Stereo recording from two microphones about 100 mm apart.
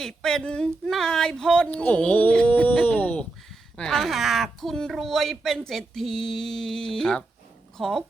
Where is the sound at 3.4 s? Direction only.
5° left (ahead or behind).